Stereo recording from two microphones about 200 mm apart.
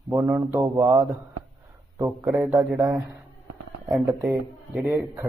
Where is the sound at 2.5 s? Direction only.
15° right (ahead or behind).